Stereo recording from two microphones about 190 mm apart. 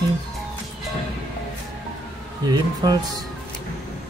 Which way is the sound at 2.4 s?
20° right (ahead or behind).